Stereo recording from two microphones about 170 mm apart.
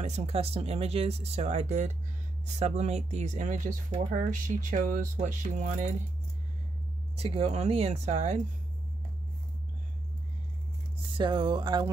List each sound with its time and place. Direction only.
0.0 s speech: 40° right (ahead or behind)
7.2 s speech: 35° right (ahead or behind)
11.1 s speech: 30° right (ahead or behind)